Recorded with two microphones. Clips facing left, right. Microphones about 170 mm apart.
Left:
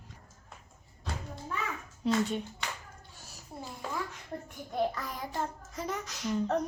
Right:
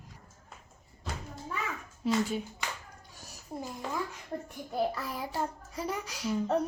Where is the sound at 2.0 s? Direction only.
5° right (ahead or behind).